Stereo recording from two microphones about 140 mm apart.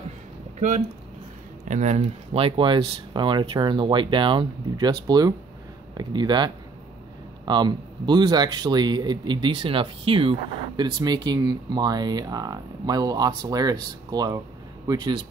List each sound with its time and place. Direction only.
0.6 s speech: 60° right (ahead or behind); by 10.3 s 40° right (ahead or behind)
10.8 s speech: 30° right (ahead or behind)